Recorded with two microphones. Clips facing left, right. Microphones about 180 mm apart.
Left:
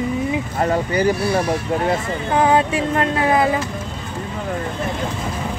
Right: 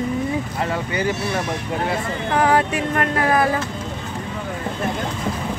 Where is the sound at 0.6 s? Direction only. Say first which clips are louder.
Left 8 dB; 40° left (ahead or behind).